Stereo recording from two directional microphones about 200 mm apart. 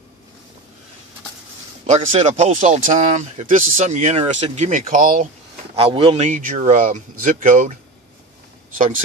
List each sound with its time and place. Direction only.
1.9 s speech: 35° right (ahead or behind)
5.8 s speech: 25° right (ahead or behind)